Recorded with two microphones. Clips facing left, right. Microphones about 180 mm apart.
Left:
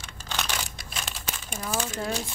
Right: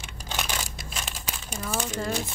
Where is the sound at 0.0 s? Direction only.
15° right (ahead or behind).